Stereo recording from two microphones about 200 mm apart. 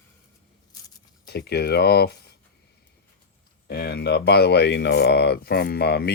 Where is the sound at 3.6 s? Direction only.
50° left (ahead or behind).